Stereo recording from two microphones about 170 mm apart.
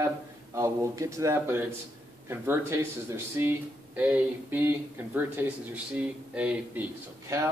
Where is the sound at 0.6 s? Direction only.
15° right (ahead or behind).